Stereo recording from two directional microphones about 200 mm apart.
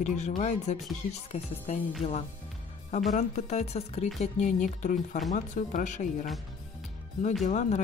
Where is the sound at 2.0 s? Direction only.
30° left (ahead or behind).